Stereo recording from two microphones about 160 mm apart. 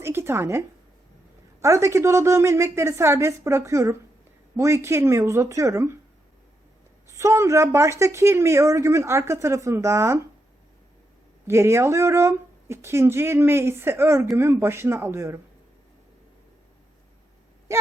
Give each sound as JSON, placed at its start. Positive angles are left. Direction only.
{"t": 0.0, "sound": "speech", "side_deg": -15}
{"t": 1.6, "sound": "speech", "side_deg": -20}
{"t": 7.1, "sound": "speech", "side_deg": -20}
{"t": 11.4, "sound": "speech", "side_deg": -15}